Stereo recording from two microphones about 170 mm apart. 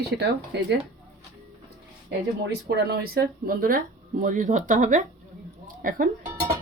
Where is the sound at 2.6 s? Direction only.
65° right (ahead or behind).